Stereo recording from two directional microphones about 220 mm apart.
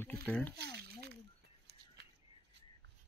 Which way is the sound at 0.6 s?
50° right (ahead or behind).